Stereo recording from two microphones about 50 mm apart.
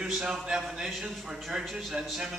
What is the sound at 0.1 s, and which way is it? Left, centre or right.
A man's voice, centre.